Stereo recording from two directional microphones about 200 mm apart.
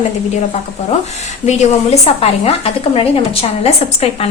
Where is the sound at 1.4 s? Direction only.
35° left (ahead or behind).